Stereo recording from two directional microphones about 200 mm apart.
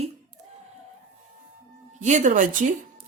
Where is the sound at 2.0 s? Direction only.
35° right (ahead or behind).